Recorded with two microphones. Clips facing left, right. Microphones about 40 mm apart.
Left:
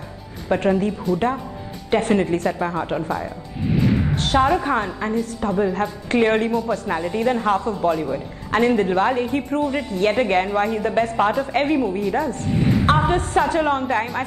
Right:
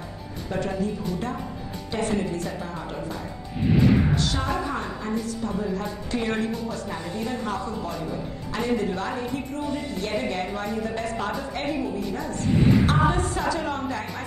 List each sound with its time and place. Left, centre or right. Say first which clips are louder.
0.5 s a woman's voice: left 8 dB; left
4.2 s a woman's voice: left 8 dB; left
9.7 s a woman's voice: left 8 dB; left